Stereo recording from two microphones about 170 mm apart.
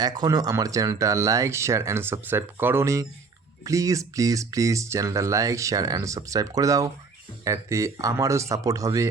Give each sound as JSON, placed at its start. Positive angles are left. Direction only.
{"t": 0.0, "sound": "speech", "side_deg": -25}